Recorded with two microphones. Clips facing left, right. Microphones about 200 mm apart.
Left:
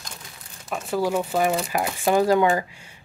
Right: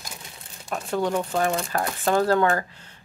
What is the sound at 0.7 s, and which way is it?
Speech, 5° left (ahead or behind).